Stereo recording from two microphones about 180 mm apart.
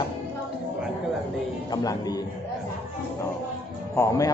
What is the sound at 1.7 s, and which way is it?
Speech, 20° left (ahead or behind).